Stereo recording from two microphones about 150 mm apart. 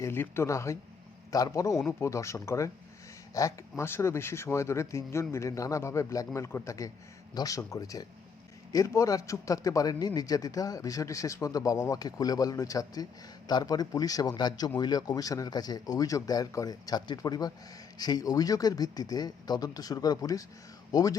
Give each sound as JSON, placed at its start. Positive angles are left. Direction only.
{"t": 0.0, "sound": "speech", "side_deg": 15}